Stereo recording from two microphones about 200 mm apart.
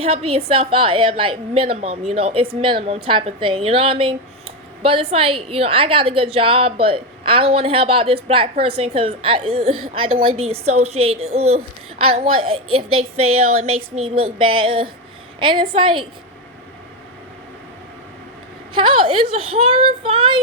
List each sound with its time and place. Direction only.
0.0 s a woman's voice: 30° right (ahead or behind)
18.7 s a woman's voice: 25° right (ahead or behind)